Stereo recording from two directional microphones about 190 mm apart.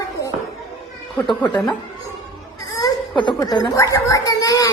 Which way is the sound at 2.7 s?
20° left (ahead or behind).